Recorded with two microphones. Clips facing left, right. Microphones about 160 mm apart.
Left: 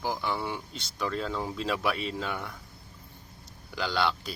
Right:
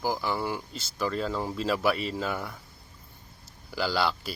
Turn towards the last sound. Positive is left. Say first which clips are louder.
# right 1 dB
turn(degrees=-5)  # may be behind; listen again after turning